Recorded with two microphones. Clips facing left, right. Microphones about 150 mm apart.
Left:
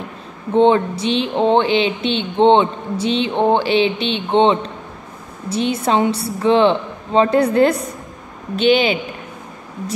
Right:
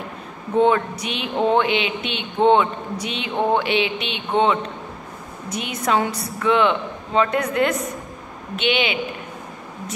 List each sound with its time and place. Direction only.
0.6 s a woman's voice: 25° left (ahead or behind)